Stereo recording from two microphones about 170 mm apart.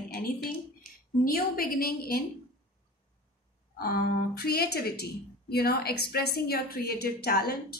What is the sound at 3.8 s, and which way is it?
A woman's voice, 65° left (ahead or behind).